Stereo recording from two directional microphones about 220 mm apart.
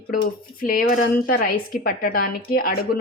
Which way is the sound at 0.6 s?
40° left (ahead or behind).